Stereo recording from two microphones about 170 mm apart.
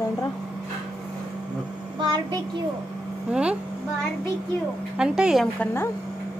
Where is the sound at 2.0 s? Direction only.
25° right (ahead or behind).